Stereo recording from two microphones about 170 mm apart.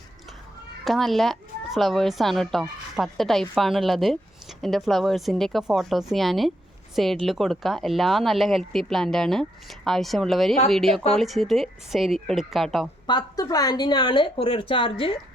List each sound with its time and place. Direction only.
0.9 s speech: centre (ahead or behind)
13.1 s speech: 25° left (ahead or behind)